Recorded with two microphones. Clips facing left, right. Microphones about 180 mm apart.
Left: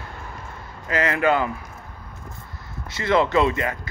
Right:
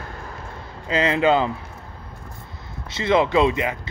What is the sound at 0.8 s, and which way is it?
Speech, 20° right (ahead or behind).